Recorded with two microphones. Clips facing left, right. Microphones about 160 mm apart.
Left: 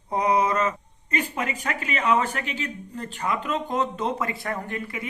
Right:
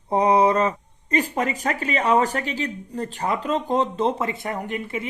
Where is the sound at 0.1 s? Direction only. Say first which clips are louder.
Right 5 dB; 30° right (ahead or behind).